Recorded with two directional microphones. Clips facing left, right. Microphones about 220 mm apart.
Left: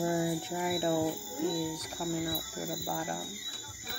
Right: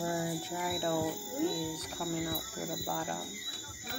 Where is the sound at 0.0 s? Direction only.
20° left (ahead or behind).